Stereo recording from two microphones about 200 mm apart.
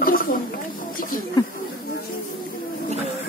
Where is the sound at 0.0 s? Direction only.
45° left (ahead or behind).